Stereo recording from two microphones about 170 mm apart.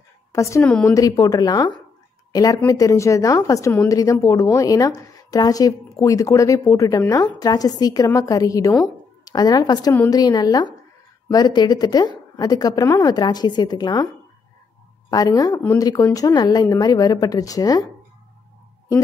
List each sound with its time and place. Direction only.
0.3 s a woman's voice: 15° left (ahead or behind)
15.0 s a woman's voice: 20° left (ahead or behind)